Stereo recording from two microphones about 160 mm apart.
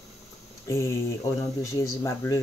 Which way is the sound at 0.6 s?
20° left (ahead or behind).